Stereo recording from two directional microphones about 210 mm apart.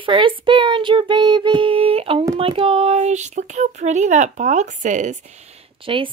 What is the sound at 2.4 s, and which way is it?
Speech, 25° right (ahead or behind).